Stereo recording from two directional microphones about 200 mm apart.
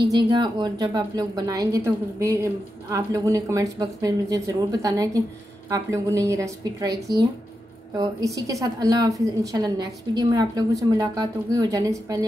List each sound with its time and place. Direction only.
0.1 s a woman's voice: 20° right (ahead or behind)